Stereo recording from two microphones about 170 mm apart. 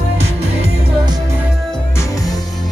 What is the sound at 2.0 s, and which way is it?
Music, 20° left (ahead or behind).